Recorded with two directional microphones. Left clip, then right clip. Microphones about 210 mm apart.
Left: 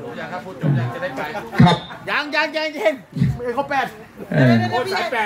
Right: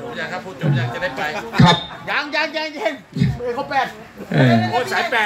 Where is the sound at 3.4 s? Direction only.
35° left (ahead or behind).